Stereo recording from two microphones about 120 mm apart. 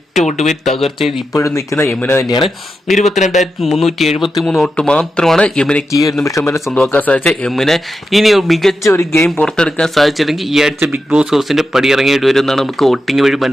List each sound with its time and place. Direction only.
0.2 s speech: 80° left
0.6 s speech: centre (ahead or behind)
1.4 s speech: 25° left (ahead or behind)
2.9 s speech: 75° left (ahead or behind)
3.4 s speech: centre (ahead or behind)
6.4 s speech: 25° left (ahead or behind)
6.7 s speech: 10° left (ahead or behind)
8.8 s speech: 20° left (ahead or behind)
9.2 s speech: 5° left (ahead or behind)